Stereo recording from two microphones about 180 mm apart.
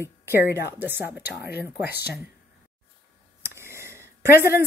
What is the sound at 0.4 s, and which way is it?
A woman's voice, 15° right (ahead or behind).